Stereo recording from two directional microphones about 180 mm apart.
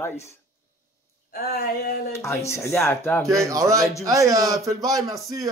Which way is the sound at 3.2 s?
15° right (ahead or behind).